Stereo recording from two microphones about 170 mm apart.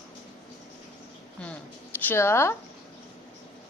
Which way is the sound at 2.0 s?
15° left (ahead or behind).